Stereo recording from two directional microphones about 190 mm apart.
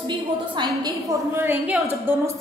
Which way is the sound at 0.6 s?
15° right (ahead or behind).